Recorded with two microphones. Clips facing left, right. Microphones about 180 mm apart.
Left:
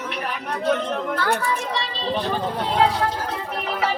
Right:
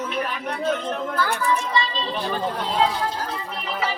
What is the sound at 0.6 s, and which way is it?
A child's voice, 70° left (ahead or behind).